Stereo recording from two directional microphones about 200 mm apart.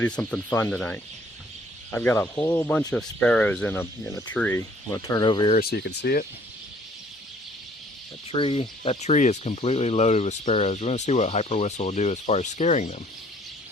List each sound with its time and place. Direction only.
0.0 s speech: 5° left (ahead or behind); by 5.5 s 20° left (ahead or behind)
5.5 s speech: 50° left (ahead or behind)
8.3 s speech: 30° left (ahead or behind)